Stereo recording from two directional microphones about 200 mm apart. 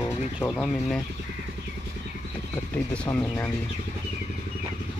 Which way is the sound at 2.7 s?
5° left (ahead or behind).